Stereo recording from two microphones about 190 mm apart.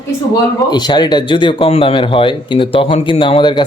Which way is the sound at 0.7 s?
20° left (ahead or behind).